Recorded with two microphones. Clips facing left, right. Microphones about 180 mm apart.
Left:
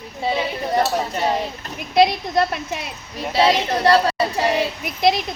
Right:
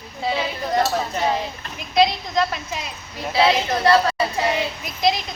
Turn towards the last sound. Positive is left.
turn(degrees=60)  # may be behind; listen again after turning